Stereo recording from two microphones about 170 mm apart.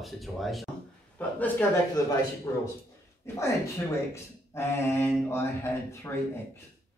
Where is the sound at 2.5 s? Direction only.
15° left (ahead or behind).